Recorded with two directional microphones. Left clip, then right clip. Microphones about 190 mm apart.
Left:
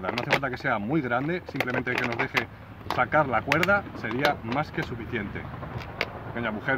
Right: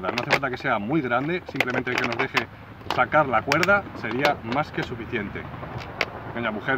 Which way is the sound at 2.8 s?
10° left (ahead or behind).